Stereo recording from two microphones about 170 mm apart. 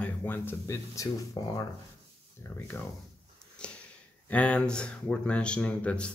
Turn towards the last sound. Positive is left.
turn(degrees=5)  # may be behind; listen again after turning